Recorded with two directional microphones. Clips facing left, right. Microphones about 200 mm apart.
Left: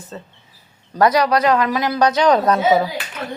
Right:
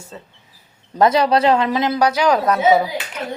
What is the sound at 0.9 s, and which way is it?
Speech, 25° right (ahead or behind).